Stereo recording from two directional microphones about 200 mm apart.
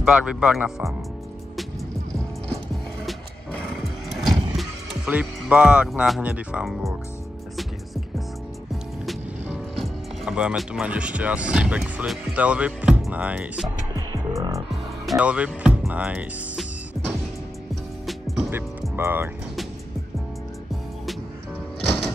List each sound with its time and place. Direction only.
0.0 s speech: 5° right (ahead or behind)
3.1 s music: centre (ahead or behind)
4.6 s speech: 5° right (ahead or behind)
9.0 s speech: centre (ahead or behind)
13.9 s music: 15° right (ahead or behind)
15.0 s speech: 5° right (ahead or behind)
18.0 s music: centre (ahead or behind)
18.9 s speech: 10° right (ahead or behind)